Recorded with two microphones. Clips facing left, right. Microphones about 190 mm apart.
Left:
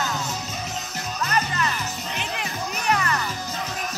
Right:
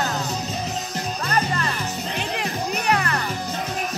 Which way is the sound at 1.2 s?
35° right (ahead or behind).